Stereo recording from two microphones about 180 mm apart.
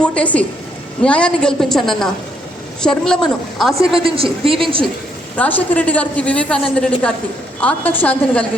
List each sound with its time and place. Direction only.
0.0 s a woman's voice: 5° left (ahead or behind)
3.9 s a woman's voice: 30° right (ahead or behind)
5.4 s a woman's voice: 10° left (ahead or behind)